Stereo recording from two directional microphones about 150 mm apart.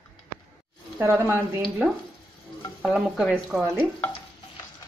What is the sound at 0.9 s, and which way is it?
Speech, 15° right (ahead or behind).